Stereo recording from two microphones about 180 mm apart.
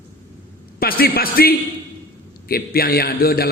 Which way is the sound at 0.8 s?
55° left (ahead or behind).